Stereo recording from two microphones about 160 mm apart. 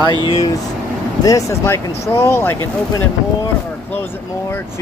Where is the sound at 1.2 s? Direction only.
20° left (ahead or behind).